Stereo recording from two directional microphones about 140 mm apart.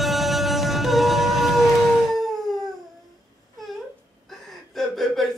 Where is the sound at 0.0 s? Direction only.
Centre (ahead or behind).